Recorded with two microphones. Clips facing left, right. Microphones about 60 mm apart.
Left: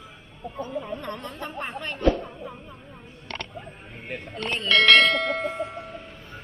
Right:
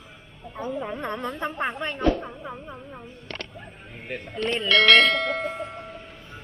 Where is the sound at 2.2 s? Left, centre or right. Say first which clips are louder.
Right 1 dB; right.